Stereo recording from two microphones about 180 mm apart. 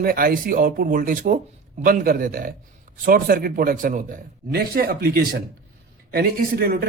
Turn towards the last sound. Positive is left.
turn(degrees=-60)  # may be behind; listen again after turning